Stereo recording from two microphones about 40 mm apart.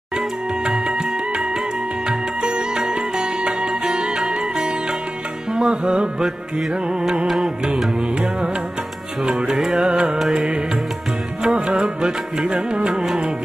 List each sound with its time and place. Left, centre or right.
2.0 s music: right
7.2 s music: centre
9.3 s music: centre